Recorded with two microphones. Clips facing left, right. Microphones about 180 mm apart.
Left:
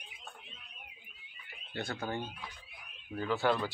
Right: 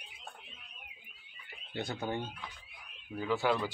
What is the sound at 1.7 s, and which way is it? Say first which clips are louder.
Speech: right 1 dB; 20° right (ahead or behind).